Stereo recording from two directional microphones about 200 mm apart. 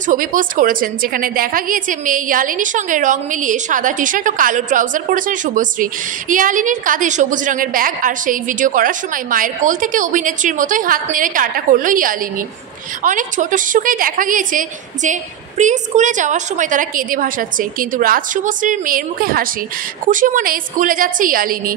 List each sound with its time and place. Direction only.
0.0 s a woman's voice: 40° right (ahead or behind)